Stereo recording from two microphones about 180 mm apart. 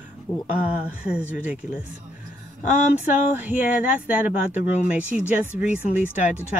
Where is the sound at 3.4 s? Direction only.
10° right (ahead or behind).